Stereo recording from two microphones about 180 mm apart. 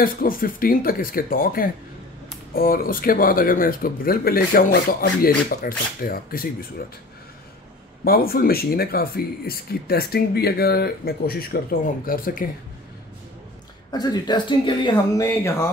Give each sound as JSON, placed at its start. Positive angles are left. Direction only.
{"t": 0.0, "sound": "speech", "side_deg": 50}
{"t": 8.0, "sound": "speech", "side_deg": 55}
{"t": 13.9, "sound": "speech", "side_deg": 25}